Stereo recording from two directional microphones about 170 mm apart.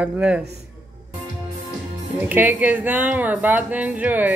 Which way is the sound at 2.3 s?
10° right (ahead or behind).